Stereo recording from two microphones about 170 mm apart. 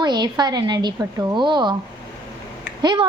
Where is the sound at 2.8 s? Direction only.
25° right (ahead or behind).